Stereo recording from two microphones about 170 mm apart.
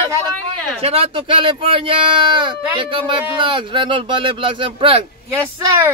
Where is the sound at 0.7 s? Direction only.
35° right (ahead or behind).